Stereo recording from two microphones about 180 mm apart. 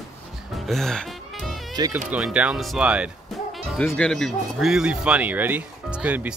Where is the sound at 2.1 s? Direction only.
5° right (ahead or behind).